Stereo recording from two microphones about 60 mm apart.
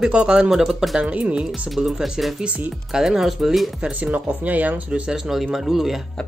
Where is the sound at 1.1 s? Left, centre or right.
Centre.